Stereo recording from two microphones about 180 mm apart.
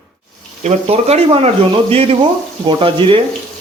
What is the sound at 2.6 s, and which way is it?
Speech, 30° right (ahead or behind).